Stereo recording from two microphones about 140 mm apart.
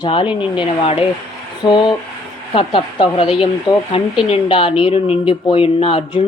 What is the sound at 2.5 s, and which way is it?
A woman's voice, 40° left (ahead or behind).